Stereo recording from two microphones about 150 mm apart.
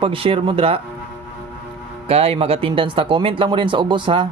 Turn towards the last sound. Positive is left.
turn(degrees=-35)  # may be behind; listen again after turning